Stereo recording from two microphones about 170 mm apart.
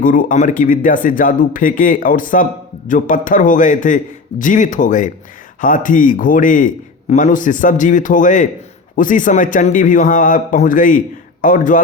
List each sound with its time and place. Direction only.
0.0 s speech: 50° left (ahead or behind)